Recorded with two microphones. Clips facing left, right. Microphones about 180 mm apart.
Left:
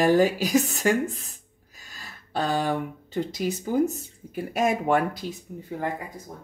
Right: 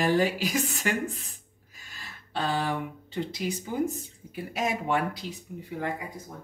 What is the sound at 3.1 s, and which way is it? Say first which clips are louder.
Speech: left 4 dB; 40° left (ahead or behind).